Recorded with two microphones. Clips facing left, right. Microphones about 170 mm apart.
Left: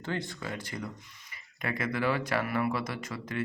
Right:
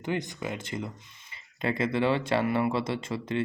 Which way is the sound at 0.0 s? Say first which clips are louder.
Right 4 dB; 20° right (ahead or behind).